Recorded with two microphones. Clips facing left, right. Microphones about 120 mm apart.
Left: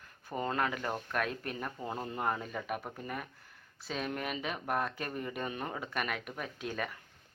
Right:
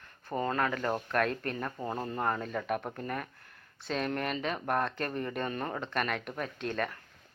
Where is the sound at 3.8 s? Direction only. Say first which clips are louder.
Right 4 dB; 5° left (ahead or behind).